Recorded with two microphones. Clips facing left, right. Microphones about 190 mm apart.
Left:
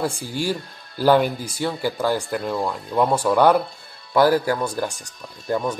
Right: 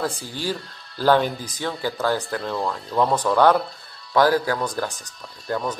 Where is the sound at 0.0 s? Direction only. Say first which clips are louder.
Left 2 dB; 10° left (ahead or behind).